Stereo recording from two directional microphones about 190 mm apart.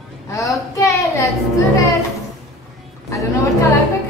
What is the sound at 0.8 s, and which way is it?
Speech, 15° left (ahead or behind).